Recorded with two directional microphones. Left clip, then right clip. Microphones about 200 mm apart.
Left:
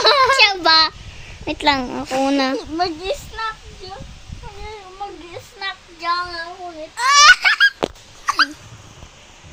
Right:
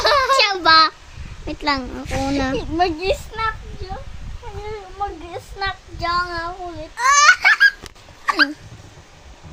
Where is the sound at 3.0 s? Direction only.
25° right (ahead or behind).